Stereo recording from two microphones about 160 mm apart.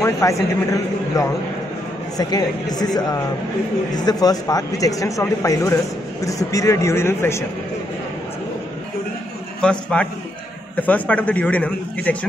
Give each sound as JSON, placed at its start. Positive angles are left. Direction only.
{"t": 0.0, "sound": "speech", "side_deg": 20}
{"t": 9.6, "sound": "a man's voice", "side_deg": 5}